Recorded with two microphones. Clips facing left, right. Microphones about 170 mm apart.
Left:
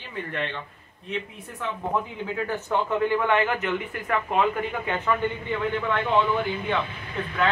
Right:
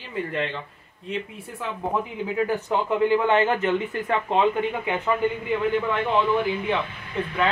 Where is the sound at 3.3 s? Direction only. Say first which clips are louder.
Right 3 dB; 30° right (ahead or behind).